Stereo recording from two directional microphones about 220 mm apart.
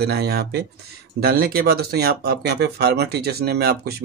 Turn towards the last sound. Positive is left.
turn(degrees=-45)  # may be behind; listen again after turning